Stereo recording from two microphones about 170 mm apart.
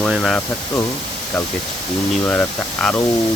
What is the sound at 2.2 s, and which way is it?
Speech, 10° left (ahead or behind).